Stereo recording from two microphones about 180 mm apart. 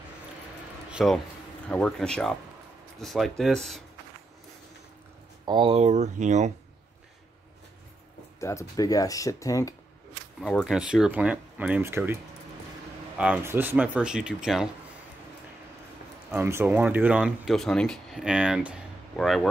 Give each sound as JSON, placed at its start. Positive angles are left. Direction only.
{"t": 0.8, "sound": "a sound", "side_deg": 0}
{"t": 1.7, "sound": "speech", "side_deg": 5}
{"t": 5.4, "sound": "speech", "side_deg": -25}
{"t": 8.4, "sound": "speech", "side_deg": 15}
{"t": 10.4, "sound": "speech", "side_deg": 0}
{"t": 13.2, "sound": "speech", "side_deg": -10}
{"t": 16.3, "sound": "speech", "side_deg": -15}